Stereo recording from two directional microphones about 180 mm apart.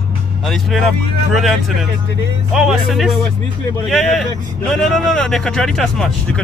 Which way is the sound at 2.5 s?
Centre (ahead or behind).